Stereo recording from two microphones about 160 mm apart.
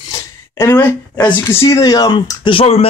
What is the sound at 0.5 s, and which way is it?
Speech, 20° left (ahead or behind).